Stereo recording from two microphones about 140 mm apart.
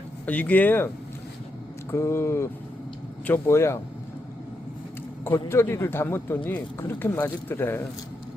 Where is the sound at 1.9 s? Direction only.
20° left (ahead or behind).